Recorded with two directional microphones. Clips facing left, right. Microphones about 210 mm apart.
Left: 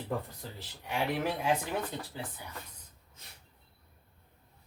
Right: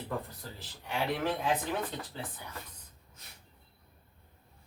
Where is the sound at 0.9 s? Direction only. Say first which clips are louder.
Even; 10° left (ahead or behind).